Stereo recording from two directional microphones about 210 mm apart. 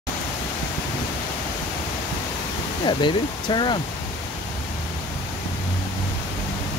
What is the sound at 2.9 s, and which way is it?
Speech, 20° left (ahead or behind).